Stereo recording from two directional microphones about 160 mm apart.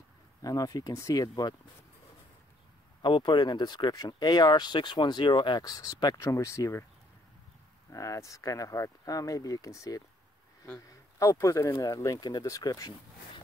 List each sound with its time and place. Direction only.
0.4 s speech: 20° left (ahead or behind)
3.0 s speech: 30° left (ahead or behind)
7.9 s speech: 20° left (ahead or behind)